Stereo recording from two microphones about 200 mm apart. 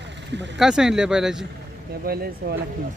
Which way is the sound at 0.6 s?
5° right (ahead or behind).